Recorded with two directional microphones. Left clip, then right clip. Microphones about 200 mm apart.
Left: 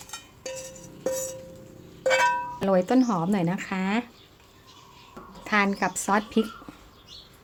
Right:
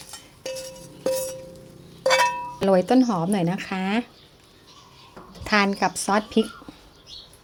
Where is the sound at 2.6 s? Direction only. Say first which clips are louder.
Right 4 dB; 10° right (ahead or behind).